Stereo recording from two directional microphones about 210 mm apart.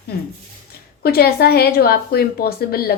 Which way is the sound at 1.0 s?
50° left (ahead or behind).